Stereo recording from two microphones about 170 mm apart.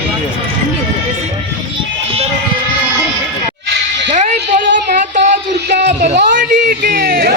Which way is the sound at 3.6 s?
90° right.